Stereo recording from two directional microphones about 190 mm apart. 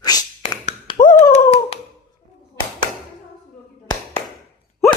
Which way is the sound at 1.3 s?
30° left (ahead or behind).